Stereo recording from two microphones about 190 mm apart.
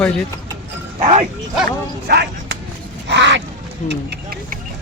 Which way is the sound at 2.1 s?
60° right (ahead or behind).